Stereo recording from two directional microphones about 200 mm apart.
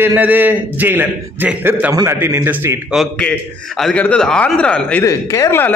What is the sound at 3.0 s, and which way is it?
A man's voice, 5° left (ahead or behind).